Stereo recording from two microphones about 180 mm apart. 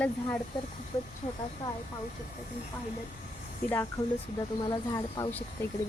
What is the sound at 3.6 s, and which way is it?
Speech, 10° left (ahead or behind).